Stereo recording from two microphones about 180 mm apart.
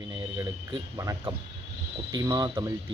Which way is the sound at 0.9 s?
20° right (ahead or behind).